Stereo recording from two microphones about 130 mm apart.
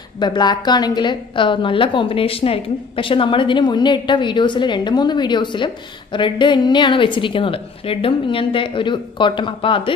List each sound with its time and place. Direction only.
0.2 s a woman's voice: 35° left (ahead or behind)